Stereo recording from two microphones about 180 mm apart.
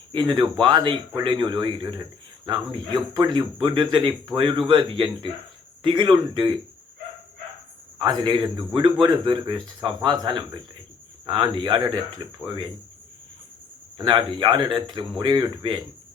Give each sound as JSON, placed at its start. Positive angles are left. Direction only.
{"t": 0.1, "sound": "speech", "side_deg": -25}
{"t": 7.9, "sound": "speech", "side_deg": -25}
{"t": 14.0, "sound": "speech", "side_deg": -25}